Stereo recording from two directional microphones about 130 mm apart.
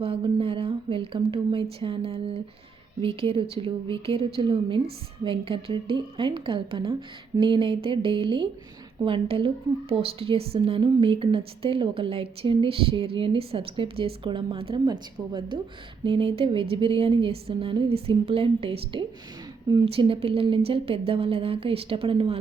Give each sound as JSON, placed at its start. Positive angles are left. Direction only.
{"t": 0.0, "sound": "a woman's voice", "side_deg": -45}